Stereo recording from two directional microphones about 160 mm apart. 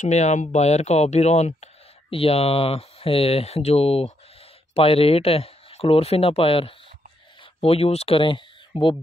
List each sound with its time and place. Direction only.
0.0 s speech: 50° left (ahead or behind); by 8.9 s 30° left (ahead or behind)